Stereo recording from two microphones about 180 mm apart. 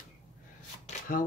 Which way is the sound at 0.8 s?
50° left (ahead or behind).